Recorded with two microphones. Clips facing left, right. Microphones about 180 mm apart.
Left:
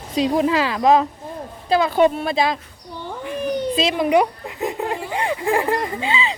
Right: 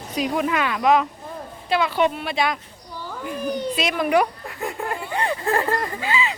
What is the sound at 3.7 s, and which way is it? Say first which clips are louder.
Speech: left 3 dB; 25° left (ahead or behind).